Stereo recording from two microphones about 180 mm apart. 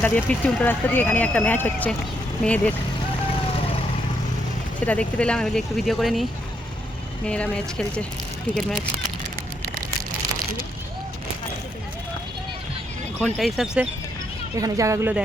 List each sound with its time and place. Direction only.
0.0 s speech: 10° left (ahead or behind)
4.9 s speech: 5° left (ahead or behind)
7.3 s speech: 5° left (ahead or behind)
13.1 s speech: 5° left (ahead or behind)
14.5 s speech: 20° right (ahead or behind)